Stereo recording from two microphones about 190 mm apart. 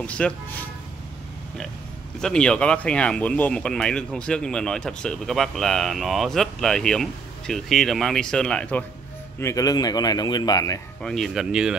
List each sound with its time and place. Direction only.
0.0 s speech: 5° left (ahead or behind)
2.2 s speech: 5° left (ahead or behind)
9.4 s speech: 15° left (ahead or behind)
11.0 s speech: centre (ahead or behind)